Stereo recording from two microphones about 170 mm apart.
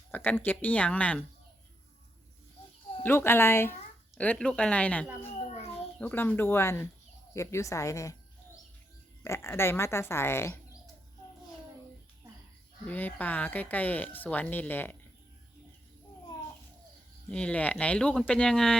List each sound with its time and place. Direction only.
0.1 s speech: 10° left (ahead or behind)
3.0 s a woman's voice: 15° left (ahead or behind)
9.2 s speech: 15° left (ahead or behind)
12.8 s speech: 10° left (ahead or behind)
17.2 s speech: 5° left (ahead or behind)